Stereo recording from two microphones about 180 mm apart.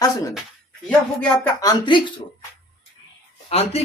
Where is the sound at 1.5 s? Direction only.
25° left (ahead or behind).